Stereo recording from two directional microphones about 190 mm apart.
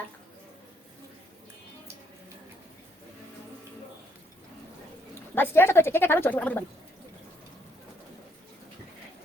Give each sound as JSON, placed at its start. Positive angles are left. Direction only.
{"t": 5.3, "sound": "speech", "side_deg": 10}